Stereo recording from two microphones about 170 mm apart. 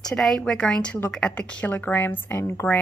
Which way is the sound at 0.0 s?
5° left (ahead or behind).